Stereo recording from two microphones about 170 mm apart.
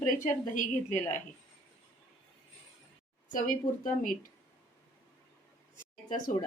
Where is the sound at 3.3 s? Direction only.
50° left (ahead or behind).